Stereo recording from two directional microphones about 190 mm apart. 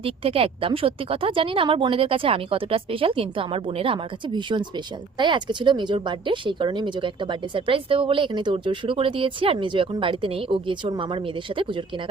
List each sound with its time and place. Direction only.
0.0 s speech: 30° right (ahead or behind)